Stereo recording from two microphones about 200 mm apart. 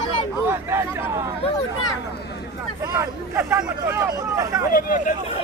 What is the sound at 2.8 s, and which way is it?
Speech, 10° right (ahead or behind).